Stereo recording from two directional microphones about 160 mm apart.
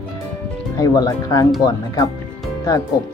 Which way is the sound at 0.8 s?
25° left (ahead or behind).